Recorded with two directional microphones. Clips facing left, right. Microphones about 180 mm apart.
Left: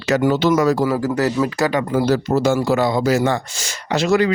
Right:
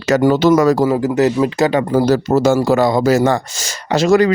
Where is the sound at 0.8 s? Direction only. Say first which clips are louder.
Right 4 dB; 20° right (ahead or behind).